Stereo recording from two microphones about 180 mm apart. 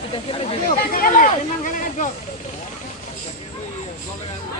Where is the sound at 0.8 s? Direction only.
55° left (ahead or behind).